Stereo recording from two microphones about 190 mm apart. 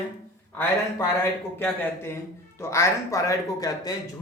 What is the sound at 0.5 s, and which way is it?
A man's voice, 15° left (ahead or behind).